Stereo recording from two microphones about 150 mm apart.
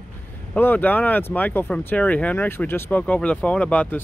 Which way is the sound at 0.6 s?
10° left (ahead or behind).